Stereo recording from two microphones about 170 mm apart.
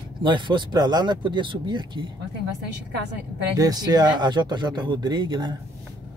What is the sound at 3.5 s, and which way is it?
Speech, 25° right (ahead or behind).